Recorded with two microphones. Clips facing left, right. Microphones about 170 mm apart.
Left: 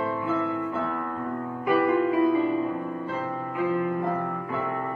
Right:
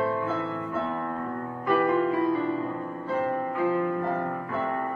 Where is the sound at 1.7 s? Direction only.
15° left (ahead or behind).